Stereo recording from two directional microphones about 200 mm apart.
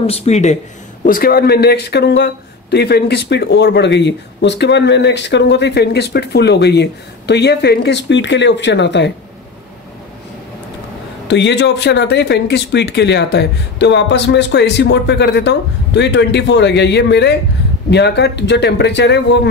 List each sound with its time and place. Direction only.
0.0 s speech: 30° left (ahead or behind)
1.0 s speech: 45° left (ahead or behind); by 9.1 s 60° left (ahead or behind)
11.2 s speech: 60° left (ahead or behind)